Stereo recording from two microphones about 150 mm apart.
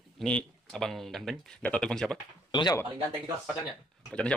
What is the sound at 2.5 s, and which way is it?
Speech, 30° left (ahead or behind).